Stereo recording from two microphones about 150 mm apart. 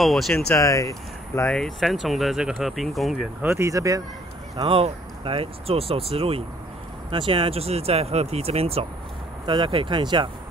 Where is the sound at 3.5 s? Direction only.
20° right (ahead or behind).